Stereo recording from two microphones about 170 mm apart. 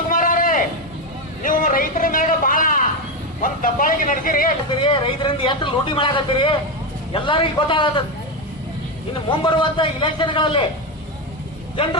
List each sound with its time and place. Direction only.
0.1 s a sound: 50° left (ahead or behind)
3.4 s vehicle: 55° left (ahead or behind)
4.8 s speech: 30° left (ahead or behind)
9.4 s a man's voice: 30° left (ahead or behind)